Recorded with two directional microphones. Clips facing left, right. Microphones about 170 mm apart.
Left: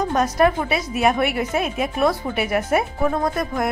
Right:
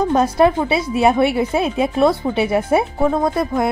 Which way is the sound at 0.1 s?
30° right (ahead or behind).